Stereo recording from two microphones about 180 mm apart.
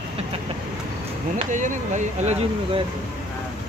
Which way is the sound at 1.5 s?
45° right (ahead or behind).